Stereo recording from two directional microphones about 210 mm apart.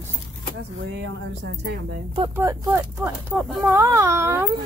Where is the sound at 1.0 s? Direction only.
55° right (ahead or behind).